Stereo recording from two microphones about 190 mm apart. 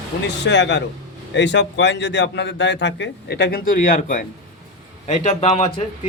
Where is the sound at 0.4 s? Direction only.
65° left (ahead or behind).